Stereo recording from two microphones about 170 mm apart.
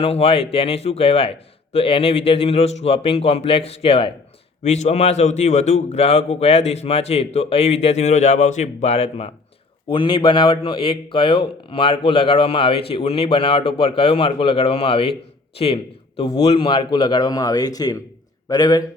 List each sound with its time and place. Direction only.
0.0 s a man's voice: 35° left (ahead or behind)